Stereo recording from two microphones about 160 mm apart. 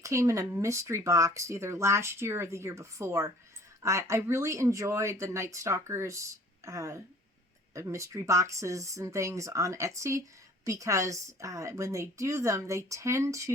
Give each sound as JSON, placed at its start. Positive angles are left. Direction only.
{"t": 0.0, "sound": "speech", "side_deg": -20}